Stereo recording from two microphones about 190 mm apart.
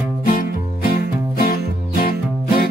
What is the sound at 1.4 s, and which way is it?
Music, 50° left (ahead or behind).